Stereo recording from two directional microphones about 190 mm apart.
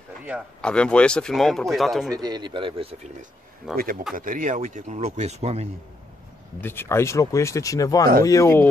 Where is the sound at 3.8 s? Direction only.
50° right (ahead or behind).